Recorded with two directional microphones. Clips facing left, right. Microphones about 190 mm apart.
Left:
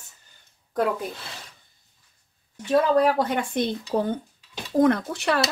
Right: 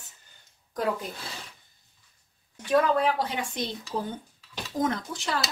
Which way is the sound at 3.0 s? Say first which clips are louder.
Left 6 dB; 45° left (ahead or behind).